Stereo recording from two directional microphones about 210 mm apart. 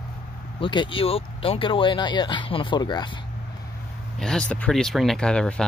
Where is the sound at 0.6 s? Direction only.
25° left (ahead or behind).